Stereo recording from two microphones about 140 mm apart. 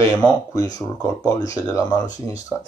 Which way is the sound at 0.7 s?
30° left (ahead or behind).